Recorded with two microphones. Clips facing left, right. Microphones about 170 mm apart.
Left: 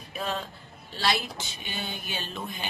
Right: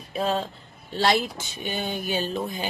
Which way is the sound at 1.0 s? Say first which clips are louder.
Right 6 dB; 50° right (ahead or behind).